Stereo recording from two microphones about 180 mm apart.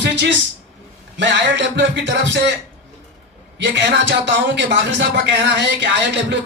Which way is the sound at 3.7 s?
90° right.